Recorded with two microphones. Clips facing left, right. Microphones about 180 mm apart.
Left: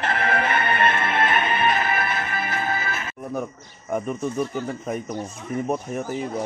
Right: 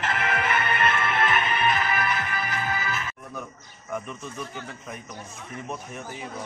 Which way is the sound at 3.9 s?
40° left (ahead or behind).